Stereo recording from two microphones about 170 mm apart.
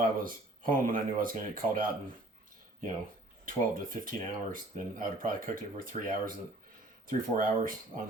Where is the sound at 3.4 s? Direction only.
55° right (ahead or behind).